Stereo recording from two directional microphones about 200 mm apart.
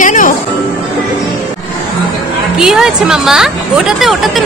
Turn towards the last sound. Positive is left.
turn(degrees=0)  # may be behind; listen again after turning